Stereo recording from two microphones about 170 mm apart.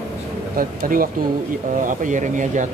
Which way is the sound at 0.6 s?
55° right (ahead or behind).